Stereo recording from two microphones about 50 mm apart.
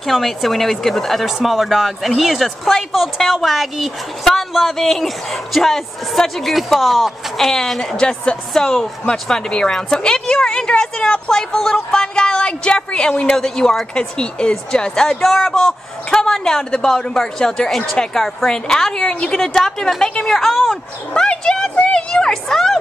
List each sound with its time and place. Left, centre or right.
0.0 s a woman's voice: centre; by 13.4 s left
13.4 s a woman's voice: centre
21.1 s a woman's voice: centre